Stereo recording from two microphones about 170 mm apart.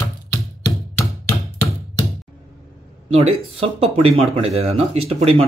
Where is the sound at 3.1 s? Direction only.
35° right (ahead or behind).